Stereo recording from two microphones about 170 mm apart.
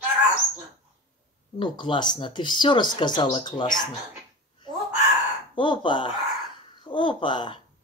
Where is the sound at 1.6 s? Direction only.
30° left (ahead or behind).